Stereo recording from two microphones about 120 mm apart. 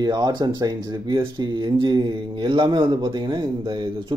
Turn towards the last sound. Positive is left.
turn(degrees=-40)  # may be behind; listen again after turning